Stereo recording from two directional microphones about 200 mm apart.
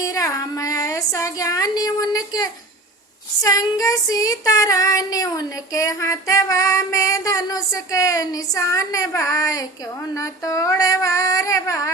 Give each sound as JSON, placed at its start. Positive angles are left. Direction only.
{"t": 0.0, "sound": "speech", "side_deg": 15}
{"t": 3.4, "sound": "child singing", "side_deg": 15}